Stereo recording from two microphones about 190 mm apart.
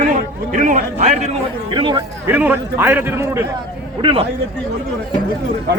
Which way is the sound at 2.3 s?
10° right (ahead or behind).